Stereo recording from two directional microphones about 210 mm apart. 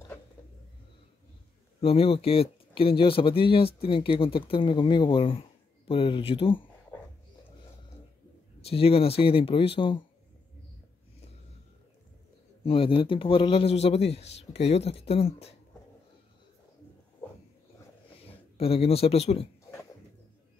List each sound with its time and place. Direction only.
1.8 s a man's voice: 30° left (ahead or behind)
8.6 s a man's voice: 25° left (ahead or behind)
12.6 s a man's voice: 25° left (ahead or behind)
18.1 s speech: 25° left (ahead or behind)